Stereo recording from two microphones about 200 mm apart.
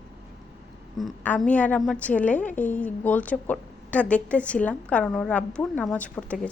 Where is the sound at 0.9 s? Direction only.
5° left (ahead or behind).